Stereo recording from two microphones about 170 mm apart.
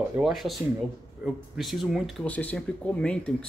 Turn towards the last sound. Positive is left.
turn(degrees=5)  # may be behind; listen again after turning